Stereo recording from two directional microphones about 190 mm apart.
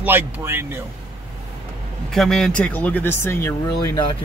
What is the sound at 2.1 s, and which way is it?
Speech, centre (ahead or behind).